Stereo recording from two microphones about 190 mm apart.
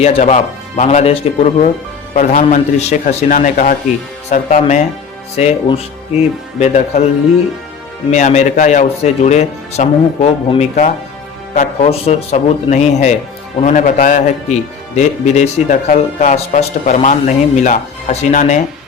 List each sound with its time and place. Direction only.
0.0 s speech: 35° left (ahead or behind)
8.1 s a man's voice: 40° left (ahead or behind)